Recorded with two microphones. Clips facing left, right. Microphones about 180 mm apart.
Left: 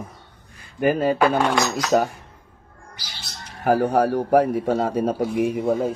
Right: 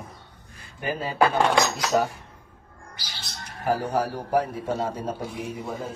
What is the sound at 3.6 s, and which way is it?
A man's voice, 60° left (ahead or behind).